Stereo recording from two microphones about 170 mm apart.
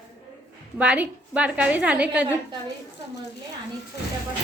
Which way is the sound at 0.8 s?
5° right (ahead or behind).